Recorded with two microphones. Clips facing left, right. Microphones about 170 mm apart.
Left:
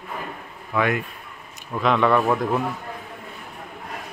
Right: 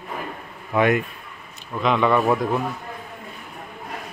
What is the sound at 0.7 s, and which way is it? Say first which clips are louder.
Speech: right 4 dB; 20° right (ahead or behind).